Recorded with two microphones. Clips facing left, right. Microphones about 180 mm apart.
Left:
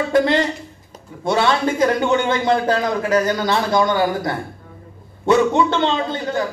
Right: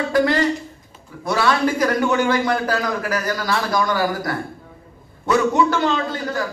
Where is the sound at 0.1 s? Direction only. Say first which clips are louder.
Even; 25° left (ahead or behind).